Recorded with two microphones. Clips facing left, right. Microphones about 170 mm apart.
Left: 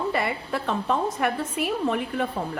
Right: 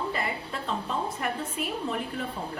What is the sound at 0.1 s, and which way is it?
A woman's voice, 75° left (ahead or behind).